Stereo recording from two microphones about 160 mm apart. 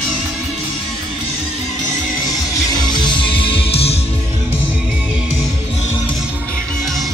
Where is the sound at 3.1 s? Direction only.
30° left (ahead or behind).